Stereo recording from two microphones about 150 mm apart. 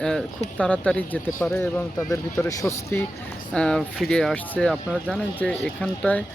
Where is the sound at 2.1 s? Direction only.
20° left (ahead or behind).